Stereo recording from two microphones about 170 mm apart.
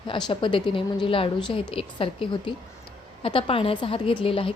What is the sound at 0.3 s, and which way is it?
A woman's voice, 30° left (ahead or behind).